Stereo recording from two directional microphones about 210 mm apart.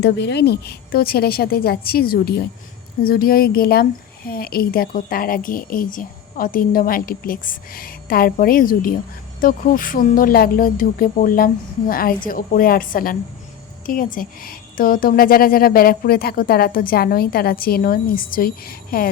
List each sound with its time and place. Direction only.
0.0 s a woman's voice: 55° left (ahead or behind)